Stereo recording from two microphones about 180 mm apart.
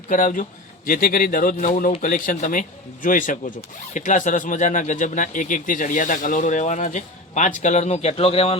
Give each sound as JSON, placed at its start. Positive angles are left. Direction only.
{"t": 0.1, "sound": "speech", "side_deg": 45}